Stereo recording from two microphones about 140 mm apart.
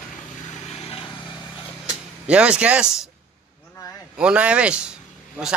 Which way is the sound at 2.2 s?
10° right (ahead or behind).